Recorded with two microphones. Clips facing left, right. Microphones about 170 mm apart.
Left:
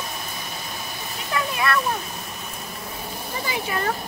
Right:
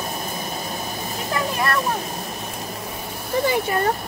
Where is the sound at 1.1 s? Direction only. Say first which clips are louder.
Right 2 dB; 40° right (ahead or behind).